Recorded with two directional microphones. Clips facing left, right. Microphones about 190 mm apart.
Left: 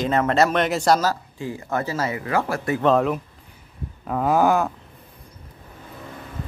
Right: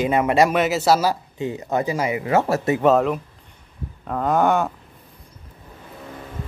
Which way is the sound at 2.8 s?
Centre (ahead or behind).